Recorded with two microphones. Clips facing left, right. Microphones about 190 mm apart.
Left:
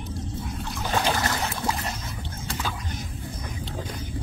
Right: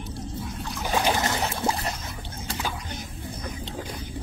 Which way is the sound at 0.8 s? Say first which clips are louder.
Right 1 dB; 15° right (ahead or behind).